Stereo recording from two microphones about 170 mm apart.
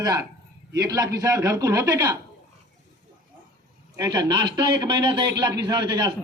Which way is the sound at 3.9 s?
20° right (ahead or behind).